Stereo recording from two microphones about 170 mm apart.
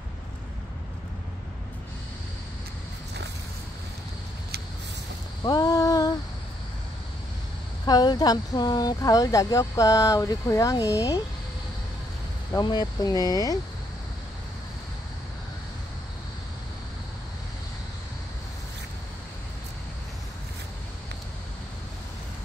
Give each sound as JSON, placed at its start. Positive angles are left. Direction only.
{"t": 5.4, "sound": "a sound", "side_deg": 20}
{"t": 7.8, "sound": "speech", "side_deg": 25}
{"t": 12.5, "sound": "speech", "side_deg": 25}